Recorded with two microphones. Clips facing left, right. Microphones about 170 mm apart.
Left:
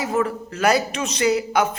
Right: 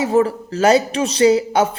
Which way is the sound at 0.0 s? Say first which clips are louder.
Right 6 dB; 30° right (ahead or behind).